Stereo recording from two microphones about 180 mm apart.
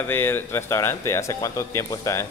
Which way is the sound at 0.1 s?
10° left (ahead or behind).